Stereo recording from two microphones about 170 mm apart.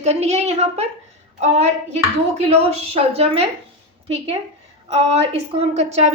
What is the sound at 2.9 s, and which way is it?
Speech, 35° right (ahead or behind).